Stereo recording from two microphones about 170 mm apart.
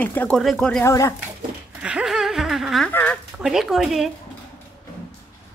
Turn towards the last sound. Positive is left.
turn(degrees=0)  # may be behind; listen again after turning